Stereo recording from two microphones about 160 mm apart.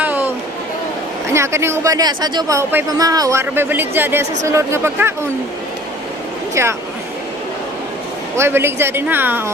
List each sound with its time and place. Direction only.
0.0 s a sound: 10° right (ahead or behind)
1.3 s speech: 15° right (ahead or behind)
6.5 s speech: 15° right (ahead or behind)
8.4 s speech: 15° right (ahead or behind)